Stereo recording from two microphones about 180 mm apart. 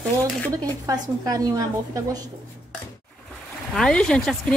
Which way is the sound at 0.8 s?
20° right (ahead or behind).